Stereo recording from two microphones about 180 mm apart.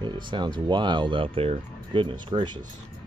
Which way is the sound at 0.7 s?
25° right (ahead or behind).